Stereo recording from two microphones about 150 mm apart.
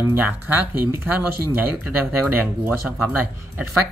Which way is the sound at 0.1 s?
10° right (ahead or behind).